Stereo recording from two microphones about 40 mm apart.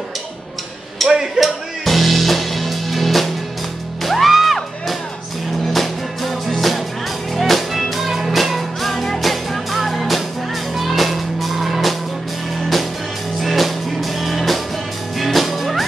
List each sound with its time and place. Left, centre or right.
1.0 s a sound: centre
1.9 s music: centre
8.9 s music: centre
13.4 s music: centre